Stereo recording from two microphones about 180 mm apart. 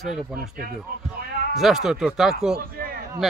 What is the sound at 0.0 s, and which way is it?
Speech, 5° right (ahead or behind).